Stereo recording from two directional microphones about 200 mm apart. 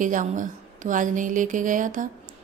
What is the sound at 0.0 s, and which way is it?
Speech, 40° right (ahead or behind).